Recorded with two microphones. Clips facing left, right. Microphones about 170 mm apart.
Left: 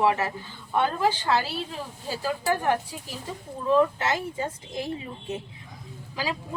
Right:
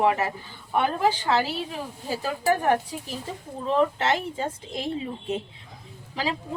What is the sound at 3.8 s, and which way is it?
A woman's voice, 25° right (ahead or behind).